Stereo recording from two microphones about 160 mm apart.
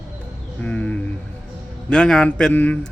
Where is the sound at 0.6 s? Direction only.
10° left (ahead or behind).